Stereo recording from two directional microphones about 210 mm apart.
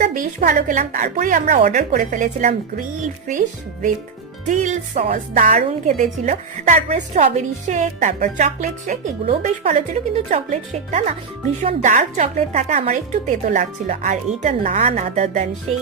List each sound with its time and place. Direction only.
0.0 s a woman's voice: 40° right (ahead or behind)